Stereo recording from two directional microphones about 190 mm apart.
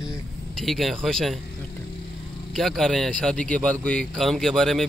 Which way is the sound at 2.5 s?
Centre (ahead or behind).